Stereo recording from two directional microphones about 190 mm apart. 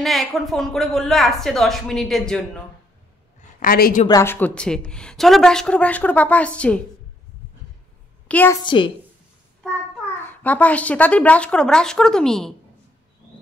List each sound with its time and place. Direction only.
0.0 s speech: centre (ahead or behind)
3.3 s a sound: 45° left (ahead or behind)
4.1 s speech: 15° left (ahead or behind)
8.3 s a woman's voice: 10° left (ahead or behind)
8.6 s a woman's voice: 25° left (ahead or behind)
10.1 s speech: 10° left (ahead or behind)